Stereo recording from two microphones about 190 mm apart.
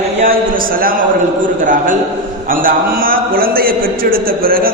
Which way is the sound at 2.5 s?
50° right (ahead or behind).